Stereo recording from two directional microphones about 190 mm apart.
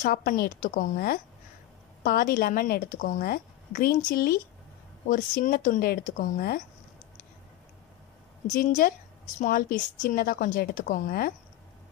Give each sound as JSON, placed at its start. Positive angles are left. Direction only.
{"t": 0.0, "sound": "a woman's voice", "side_deg": 45}
{"t": 8.5, "sound": "a woman's voice", "side_deg": 45}